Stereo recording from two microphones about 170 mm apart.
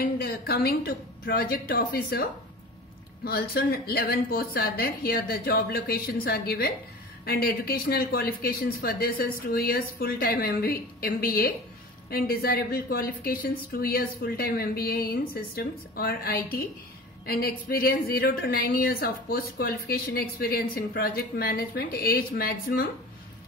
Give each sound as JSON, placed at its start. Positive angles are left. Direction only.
{"t": 0.0, "sound": "a woman's voice", "side_deg": 65}
{"t": 3.3, "sound": "a woman's voice", "side_deg": 65}